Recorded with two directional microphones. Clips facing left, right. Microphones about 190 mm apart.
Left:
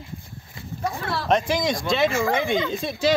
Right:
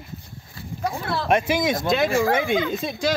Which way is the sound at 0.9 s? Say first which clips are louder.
Right 1 dB; 10° right (ahead or behind).